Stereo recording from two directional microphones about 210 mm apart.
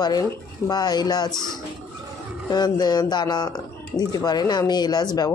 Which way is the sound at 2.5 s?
20° left (ahead or behind).